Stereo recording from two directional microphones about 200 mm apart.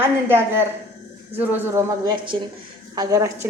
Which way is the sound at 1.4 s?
10° right (ahead or behind).